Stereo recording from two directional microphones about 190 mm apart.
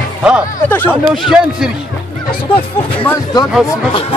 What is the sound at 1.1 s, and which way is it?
Speech, centre (ahead or behind).